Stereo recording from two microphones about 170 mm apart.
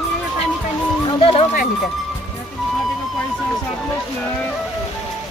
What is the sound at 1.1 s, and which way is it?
Speech, 30° left (ahead or behind).